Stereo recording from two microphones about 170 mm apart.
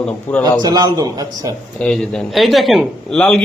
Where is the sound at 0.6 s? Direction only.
25° right (ahead or behind).